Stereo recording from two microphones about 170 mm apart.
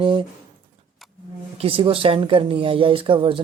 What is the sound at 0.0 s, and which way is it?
Speech, 30° right (ahead or behind).